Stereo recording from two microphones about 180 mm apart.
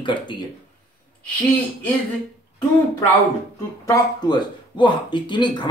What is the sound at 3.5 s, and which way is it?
Speech, 20° left (ahead or behind).